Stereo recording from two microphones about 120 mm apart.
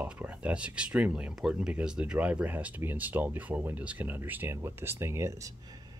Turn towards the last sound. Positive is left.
turn(degrees=-25)  # may be behind; listen again after turning